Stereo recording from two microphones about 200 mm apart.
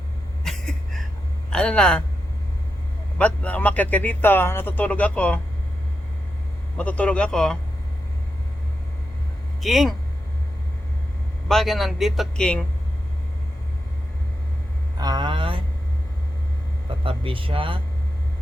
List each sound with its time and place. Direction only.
0.5 s a sound: centre (ahead or behind)
1.5 s a man's voice: 5° left (ahead or behind)
3.2 s a man's voice: 5° left (ahead or behind)
6.7 s a man's voice: 5° left (ahead or behind)
9.6 s speech: centre (ahead or behind)
11.4 s a man's voice: centre (ahead or behind)
14.9 s speech: 20° right (ahead or behind)
16.9 s speech: 25° right (ahead or behind)